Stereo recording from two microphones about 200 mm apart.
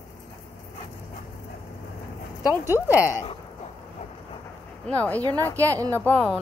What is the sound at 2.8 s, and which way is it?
Speech, 10° right (ahead or behind).